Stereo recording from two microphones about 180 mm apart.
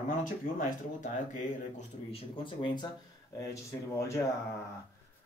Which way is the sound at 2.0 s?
30° left (ahead or behind).